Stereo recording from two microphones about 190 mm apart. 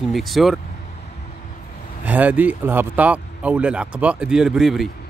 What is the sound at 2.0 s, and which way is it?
Speech, 10° right (ahead or behind).